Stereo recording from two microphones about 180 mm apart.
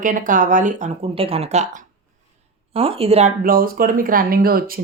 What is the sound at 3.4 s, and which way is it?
Speech, 55° right (ahead or behind).